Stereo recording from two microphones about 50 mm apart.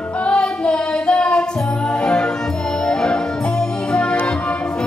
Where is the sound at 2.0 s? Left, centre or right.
Centre.